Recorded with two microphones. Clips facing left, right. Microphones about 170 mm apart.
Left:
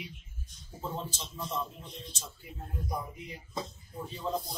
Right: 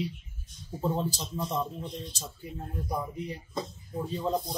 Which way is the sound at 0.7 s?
35° right (ahead or behind).